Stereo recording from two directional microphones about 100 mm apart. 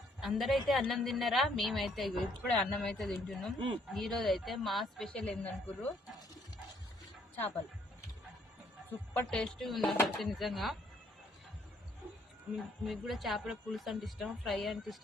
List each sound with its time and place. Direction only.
0.2 s a woman's voice: centre (ahead or behind); by 5.9 s 15° left (ahead or behind)
7.3 s speech: 20° left (ahead or behind)
8.9 s speech: 15° left (ahead or behind)
9.4 s a woman's voice: centre (ahead or behind)
12.8 s a woman's voice: centre (ahead or behind)